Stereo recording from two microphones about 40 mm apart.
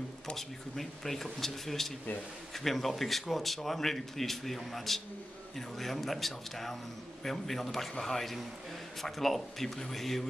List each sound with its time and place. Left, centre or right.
0.4 s speech: centre